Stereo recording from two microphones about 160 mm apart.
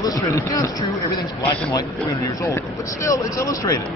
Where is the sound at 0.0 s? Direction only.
20° left (ahead or behind).